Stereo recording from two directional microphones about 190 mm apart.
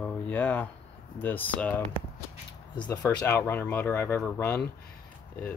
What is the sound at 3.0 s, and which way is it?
Speech, 10° left (ahead or behind).